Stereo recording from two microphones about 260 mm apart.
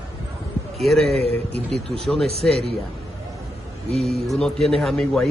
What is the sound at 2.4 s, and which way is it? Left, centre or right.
Speech, centre.